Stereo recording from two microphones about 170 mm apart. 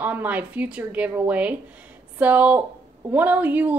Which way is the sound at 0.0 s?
10° right (ahead or behind).